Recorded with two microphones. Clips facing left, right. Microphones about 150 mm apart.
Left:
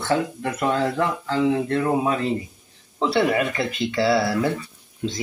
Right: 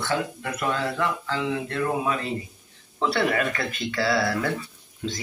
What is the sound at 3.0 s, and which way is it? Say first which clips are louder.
Speech: left 3 dB; 20° left (ahead or behind).